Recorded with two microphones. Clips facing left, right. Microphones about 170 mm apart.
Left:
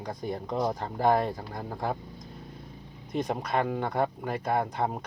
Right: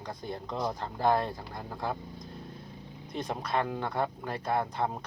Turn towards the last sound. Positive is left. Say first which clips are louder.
# left 2 dB
turn(degrees=15)  # may be behind; listen again after turning